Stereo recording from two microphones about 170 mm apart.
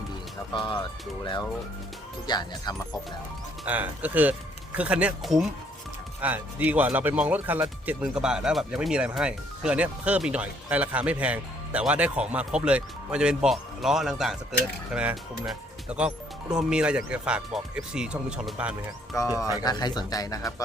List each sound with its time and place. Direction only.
0.5 s speech: 30° left (ahead or behind)
3.7 s speech: 10° right (ahead or behind)
19.1 s speech: 20° left (ahead or behind)